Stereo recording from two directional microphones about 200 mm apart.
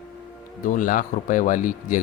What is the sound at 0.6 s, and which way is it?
Speech, 40° left (ahead or behind).